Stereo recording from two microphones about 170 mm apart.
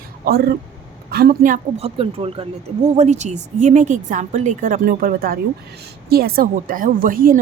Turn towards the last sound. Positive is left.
turn(degrees=-55)  # may be behind; listen again after turning